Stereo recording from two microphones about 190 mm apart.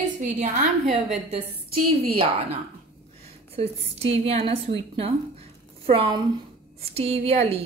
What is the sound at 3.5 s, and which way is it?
A woman's voice, 30° right (ahead or behind).